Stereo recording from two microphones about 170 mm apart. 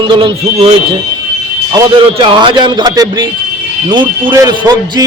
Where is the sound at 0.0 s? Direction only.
30° right (ahead or behind).